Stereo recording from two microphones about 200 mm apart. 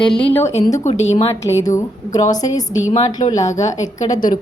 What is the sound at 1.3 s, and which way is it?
A woman's voice, 15° left (ahead or behind).